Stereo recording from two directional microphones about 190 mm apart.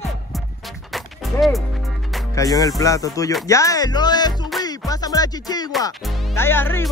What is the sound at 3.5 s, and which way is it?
Speech, 15° left (ahead or behind).